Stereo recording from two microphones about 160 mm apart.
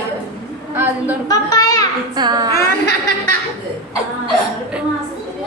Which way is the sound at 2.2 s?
25° right (ahead or behind).